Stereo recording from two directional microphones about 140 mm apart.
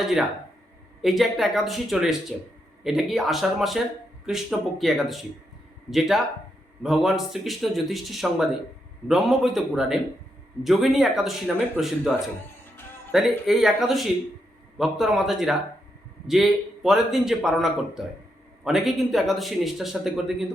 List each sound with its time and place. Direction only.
0.0 s speech: centre (ahead or behind)
13.1 s speech: centre (ahead or behind)